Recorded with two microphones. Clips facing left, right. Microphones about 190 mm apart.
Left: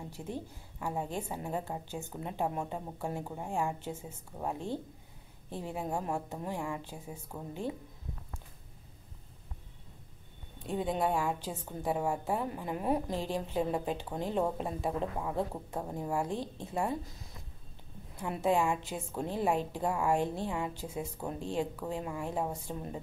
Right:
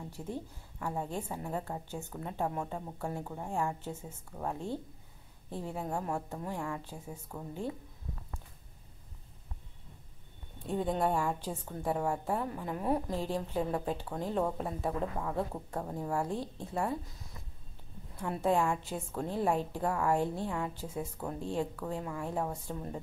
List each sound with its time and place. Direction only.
0.2 s a woman's voice: 15° left (ahead or behind)
10.7 s a woman's voice: 10° left (ahead or behind)
18.2 s a woman's voice: 15° left (ahead or behind)